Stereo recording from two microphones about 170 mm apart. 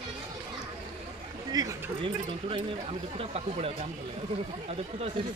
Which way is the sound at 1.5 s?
20° right (ahead or behind).